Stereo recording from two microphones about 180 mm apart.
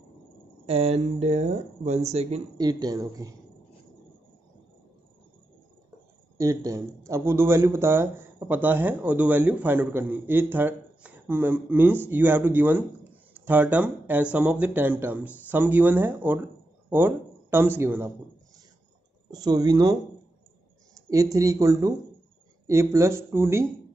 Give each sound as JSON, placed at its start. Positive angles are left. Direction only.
{"t": 0.7, "sound": "speech", "side_deg": -35}
{"t": 2.5, "sound": "speech", "side_deg": -20}
{"t": 6.3, "sound": "speech", "side_deg": -15}
{"t": 19.3, "sound": "speech", "side_deg": -20}
{"t": 21.1, "sound": "speech", "side_deg": -20}